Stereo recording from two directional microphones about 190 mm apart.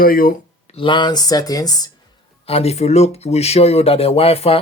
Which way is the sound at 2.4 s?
35° left (ahead or behind).